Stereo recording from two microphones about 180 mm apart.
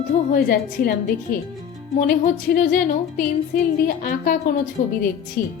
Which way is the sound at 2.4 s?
50° left (ahead or behind).